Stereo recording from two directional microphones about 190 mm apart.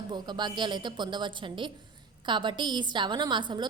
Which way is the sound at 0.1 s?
25° right (ahead or behind).